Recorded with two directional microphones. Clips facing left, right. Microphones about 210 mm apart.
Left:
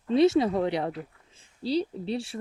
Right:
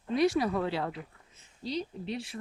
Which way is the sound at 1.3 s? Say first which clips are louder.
Left 8 dB; 30° left (ahead or behind).